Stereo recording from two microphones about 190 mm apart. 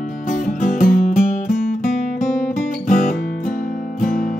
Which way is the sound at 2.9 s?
45° left (ahead or behind).